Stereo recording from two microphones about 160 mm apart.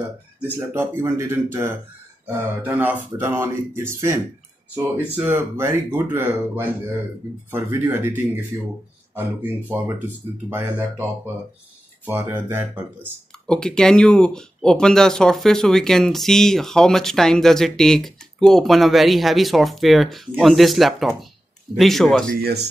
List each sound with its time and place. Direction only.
0.6 s speech: 15° right (ahead or behind)
10.5 s speech: 10° right (ahead or behind)
12.1 s speech: 15° right (ahead or behind)
13.5 s speech: 5° left (ahead or behind)
22.4 s speech: 90° right